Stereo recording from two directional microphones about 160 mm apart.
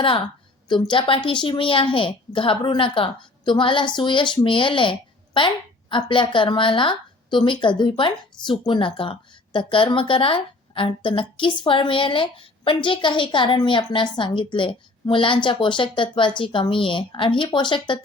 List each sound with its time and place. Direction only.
0.7 s speech: 30° left (ahead or behind)